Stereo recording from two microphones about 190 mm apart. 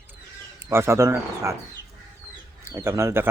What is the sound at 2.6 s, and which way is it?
Speech, 15° right (ahead or behind).